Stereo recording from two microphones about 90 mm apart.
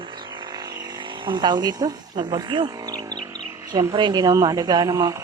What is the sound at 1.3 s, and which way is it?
A woman's voice, 55° right (ahead or behind).